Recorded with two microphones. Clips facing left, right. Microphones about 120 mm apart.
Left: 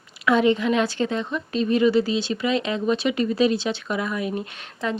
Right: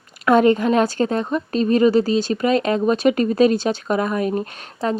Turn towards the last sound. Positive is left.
turn(degrees=-40)  # may be behind; listen again after turning